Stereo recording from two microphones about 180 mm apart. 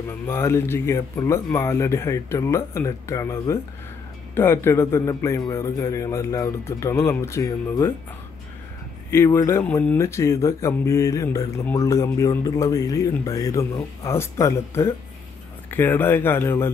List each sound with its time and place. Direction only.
0.3 s speech: 15° left (ahead or behind)
9.1 s speech: 15° left (ahead or behind)